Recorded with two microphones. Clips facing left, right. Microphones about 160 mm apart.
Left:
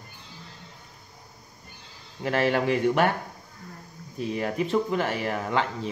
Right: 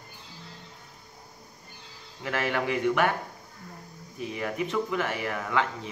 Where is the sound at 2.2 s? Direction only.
30° left (ahead or behind).